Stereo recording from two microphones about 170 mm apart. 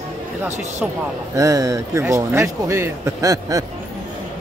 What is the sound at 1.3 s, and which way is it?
A man's voice, 20° right (ahead or behind).